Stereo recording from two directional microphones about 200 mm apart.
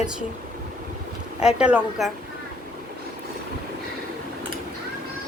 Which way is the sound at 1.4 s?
5° right (ahead or behind).